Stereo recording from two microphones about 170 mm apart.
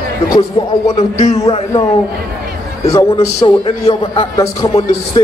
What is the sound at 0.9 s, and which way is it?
Speech, 40° left (ahead or behind).